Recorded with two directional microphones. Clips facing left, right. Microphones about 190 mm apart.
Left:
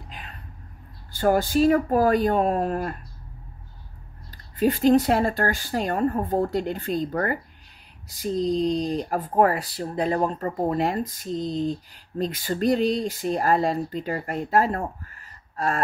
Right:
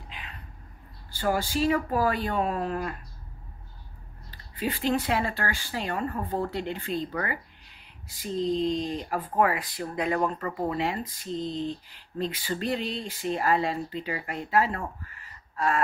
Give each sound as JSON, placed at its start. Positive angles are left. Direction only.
{"t": 0.1, "sound": "a sound", "side_deg": 45}
{"t": 1.1, "sound": "speech", "side_deg": 50}
{"t": 4.3, "sound": "speech", "side_deg": 45}